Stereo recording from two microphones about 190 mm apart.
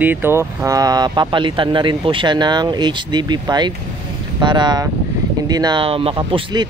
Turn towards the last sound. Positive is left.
turn(degrees=-25)  # may be behind; listen again after turning